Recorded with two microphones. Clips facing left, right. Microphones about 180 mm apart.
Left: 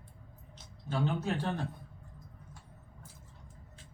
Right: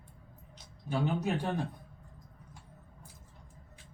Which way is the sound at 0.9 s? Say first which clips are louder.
Right 1 dB; 15° right (ahead or behind).